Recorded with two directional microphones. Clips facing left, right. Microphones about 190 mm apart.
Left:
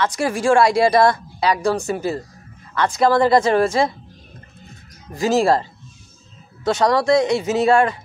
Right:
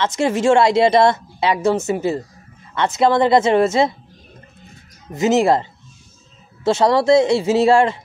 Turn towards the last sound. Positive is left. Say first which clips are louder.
# right 2 dB
turn(degrees=-25)  # may be behind; listen again after turning